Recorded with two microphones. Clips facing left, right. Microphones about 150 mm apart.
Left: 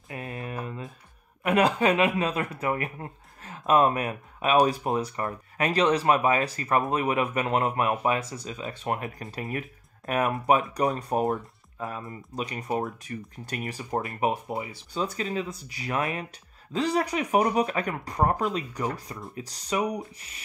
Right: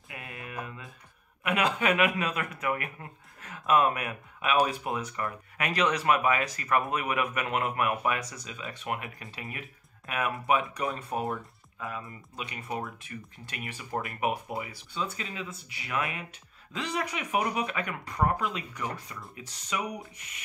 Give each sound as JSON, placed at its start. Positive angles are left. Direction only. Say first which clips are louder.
{"t": 0.1, "sound": "mantra", "louder": "left 6 dB", "side_deg": 35}
{"t": 1.4, "sound": "speech", "louder": "left 5 dB", "side_deg": 35}
{"t": 15.0, "sound": "speech", "louder": "left 6 dB", "side_deg": 40}